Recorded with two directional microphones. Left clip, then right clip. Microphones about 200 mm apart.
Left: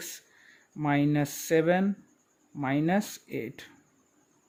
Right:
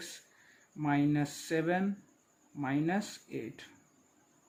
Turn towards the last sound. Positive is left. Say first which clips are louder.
# left 6 dB
turn(degrees=50)  # may be behind; listen again after turning